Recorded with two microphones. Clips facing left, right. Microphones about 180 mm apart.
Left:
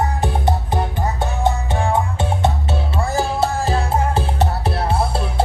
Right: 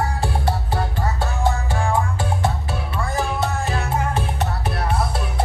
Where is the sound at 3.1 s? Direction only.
30° left (ahead or behind).